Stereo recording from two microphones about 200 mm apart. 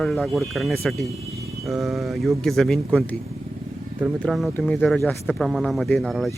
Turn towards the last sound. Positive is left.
turn(degrees=0)  # may be behind; listen again after turning